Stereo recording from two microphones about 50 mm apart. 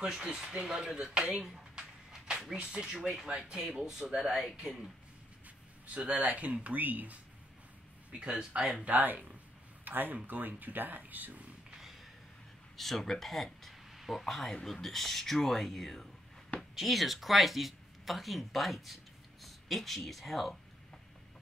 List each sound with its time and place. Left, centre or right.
0.0 s speech: centre
1.4 s a sound: centre
2.5 s speech: centre
5.9 s speech: right
8.1 s speech: right
8.4 s speech: centre
8.8 s speech: right
12.7 s speech: centre